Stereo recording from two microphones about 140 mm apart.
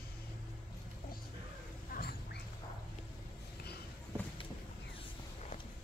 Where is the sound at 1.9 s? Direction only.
90° left.